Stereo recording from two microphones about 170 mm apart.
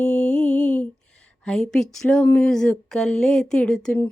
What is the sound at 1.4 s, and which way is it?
Speech, 5° left (ahead or behind).